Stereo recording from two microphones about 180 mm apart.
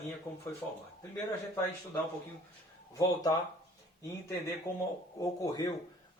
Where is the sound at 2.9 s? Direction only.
20° left (ahead or behind).